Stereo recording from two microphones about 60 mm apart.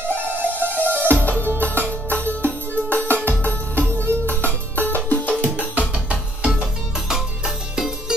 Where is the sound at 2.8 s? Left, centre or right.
Left.